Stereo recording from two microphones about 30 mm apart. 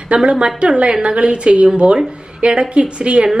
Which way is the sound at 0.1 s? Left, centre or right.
Right.